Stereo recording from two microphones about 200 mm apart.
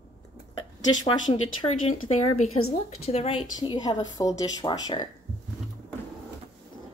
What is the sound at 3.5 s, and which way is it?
A woman's voice, 20° left (ahead or behind).